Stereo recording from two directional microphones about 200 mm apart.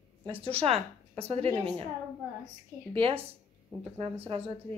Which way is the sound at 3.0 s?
25° right (ahead or behind).